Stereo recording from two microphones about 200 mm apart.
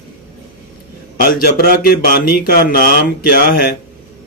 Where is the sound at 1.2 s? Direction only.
45° left (ahead or behind).